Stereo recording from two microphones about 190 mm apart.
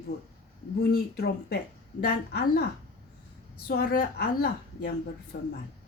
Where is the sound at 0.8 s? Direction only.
55° left (ahead or behind).